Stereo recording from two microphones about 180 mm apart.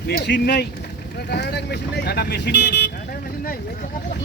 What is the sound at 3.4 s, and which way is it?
Speech, 50° left (ahead or behind).